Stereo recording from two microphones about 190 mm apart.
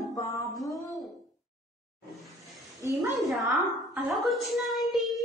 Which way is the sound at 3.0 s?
15° right (ahead or behind).